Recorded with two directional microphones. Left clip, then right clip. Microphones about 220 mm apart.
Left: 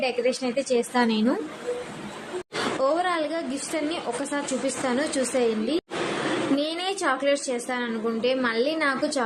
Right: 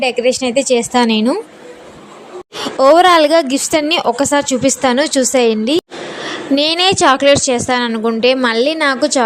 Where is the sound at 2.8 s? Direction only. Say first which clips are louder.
Right 18 dB; 45° right (ahead or behind).